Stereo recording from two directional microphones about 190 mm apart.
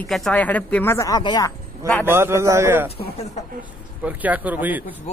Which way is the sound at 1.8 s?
15° right (ahead or behind).